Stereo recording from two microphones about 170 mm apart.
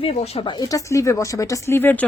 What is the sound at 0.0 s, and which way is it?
Speech, 40° left (ahead or behind).